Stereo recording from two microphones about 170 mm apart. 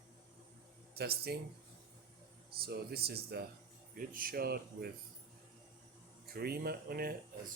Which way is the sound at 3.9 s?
55° right (ahead or behind).